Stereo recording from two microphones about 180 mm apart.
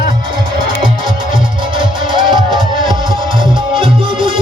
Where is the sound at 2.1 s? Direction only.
25° right (ahead or behind).